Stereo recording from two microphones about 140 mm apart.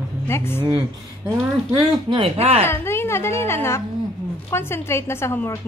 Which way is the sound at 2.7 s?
15° left (ahead or behind).